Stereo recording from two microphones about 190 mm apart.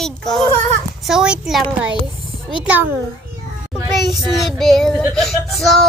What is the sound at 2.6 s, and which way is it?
Speech, 10° right (ahead or behind).